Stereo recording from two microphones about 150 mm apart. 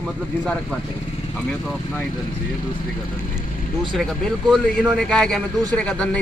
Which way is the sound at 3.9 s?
Centre (ahead or behind).